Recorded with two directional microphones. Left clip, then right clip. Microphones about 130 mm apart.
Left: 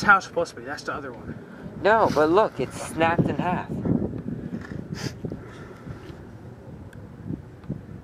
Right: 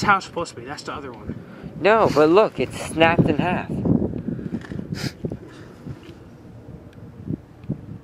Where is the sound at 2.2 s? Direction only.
15° right (ahead or behind).